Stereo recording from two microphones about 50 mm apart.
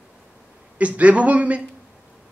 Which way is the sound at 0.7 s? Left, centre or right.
Right.